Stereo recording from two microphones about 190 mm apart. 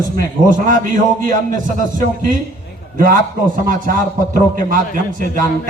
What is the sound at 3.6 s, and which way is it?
A man's voice, 45° right (ahead or behind).